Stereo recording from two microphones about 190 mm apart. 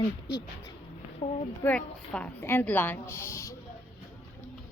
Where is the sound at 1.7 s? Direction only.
5° left (ahead or behind).